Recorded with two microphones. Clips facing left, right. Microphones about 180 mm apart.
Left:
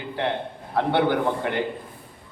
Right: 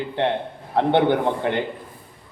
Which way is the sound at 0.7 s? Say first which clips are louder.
Right 3 dB; 25° right (ahead or behind).